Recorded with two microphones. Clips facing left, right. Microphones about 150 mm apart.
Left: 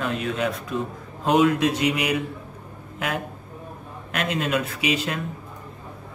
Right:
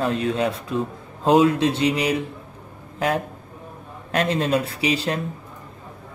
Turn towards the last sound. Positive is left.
turn(degrees=-35)  # may be behind; listen again after turning